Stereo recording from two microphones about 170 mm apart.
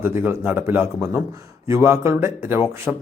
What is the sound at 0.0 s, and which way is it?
A man's voice, 15° right (ahead or behind).